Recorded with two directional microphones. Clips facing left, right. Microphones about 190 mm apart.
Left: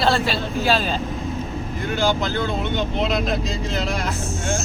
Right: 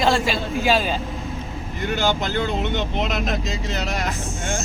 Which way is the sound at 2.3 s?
20° right (ahead or behind).